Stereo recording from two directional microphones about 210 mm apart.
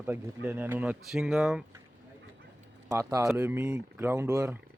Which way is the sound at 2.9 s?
15° right (ahead or behind).